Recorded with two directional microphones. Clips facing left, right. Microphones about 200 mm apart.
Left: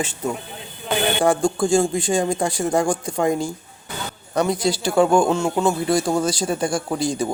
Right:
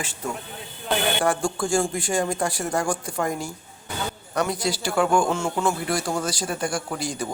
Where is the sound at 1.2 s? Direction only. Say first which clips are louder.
Left 5 dB; 25° left (ahead or behind).